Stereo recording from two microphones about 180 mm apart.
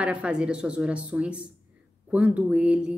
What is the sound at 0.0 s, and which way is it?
A woman's voice, 5° right (ahead or behind).